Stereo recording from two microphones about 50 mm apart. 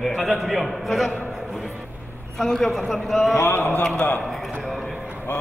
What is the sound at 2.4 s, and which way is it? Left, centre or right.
Speech, centre.